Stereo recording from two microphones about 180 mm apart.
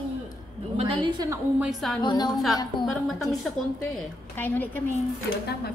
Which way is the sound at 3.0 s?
Centre (ahead or behind).